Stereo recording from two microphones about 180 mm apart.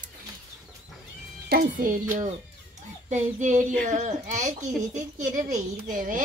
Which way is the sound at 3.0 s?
40° right (ahead or behind).